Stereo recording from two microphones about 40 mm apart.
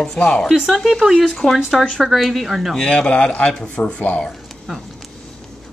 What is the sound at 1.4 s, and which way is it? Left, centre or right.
A woman's voice, centre.